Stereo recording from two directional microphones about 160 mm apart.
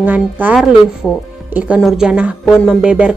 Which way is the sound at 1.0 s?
10° left (ahead or behind).